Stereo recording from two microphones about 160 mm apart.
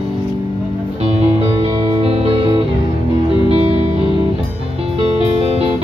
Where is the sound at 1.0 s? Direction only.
35° right (ahead or behind).